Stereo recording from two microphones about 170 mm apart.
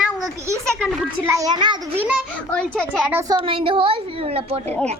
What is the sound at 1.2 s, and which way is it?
Speech, 20° right (ahead or behind).